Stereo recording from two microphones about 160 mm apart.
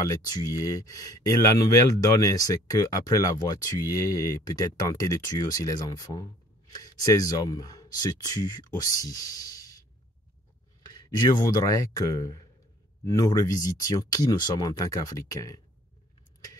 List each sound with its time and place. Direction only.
0.1 s speech: 25° left (ahead or behind)
10.9 s speech: 20° left (ahead or behind)